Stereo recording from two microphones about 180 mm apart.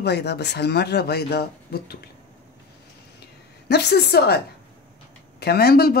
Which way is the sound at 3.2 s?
65° left (ahead or behind).